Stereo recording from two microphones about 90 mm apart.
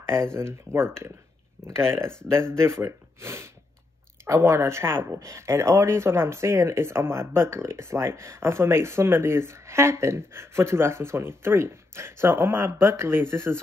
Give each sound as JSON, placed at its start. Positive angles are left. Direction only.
{"t": 0.1, "sound": "speech", "side_deg": -30}